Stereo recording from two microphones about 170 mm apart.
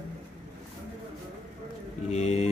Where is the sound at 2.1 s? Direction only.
40° left (ahead or behind).